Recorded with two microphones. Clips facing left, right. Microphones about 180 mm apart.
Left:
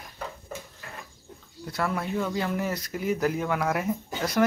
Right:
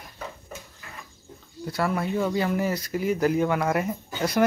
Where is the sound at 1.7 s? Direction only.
Centre (ahead or behind).